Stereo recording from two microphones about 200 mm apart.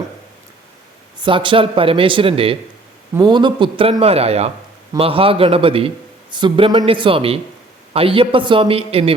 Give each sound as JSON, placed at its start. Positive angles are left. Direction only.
{"t": 1.2, "sound": "speech", "side_deg": -25}